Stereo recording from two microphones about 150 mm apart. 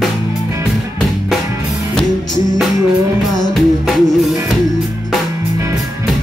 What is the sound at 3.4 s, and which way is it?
Music, centre (ahead or behind).